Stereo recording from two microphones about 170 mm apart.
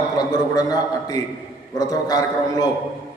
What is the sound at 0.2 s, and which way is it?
A man's voice, 20° left (ahead or behind).